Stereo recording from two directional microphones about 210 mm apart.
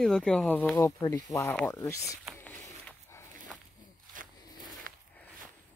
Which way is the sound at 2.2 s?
5° left (ahead or behind).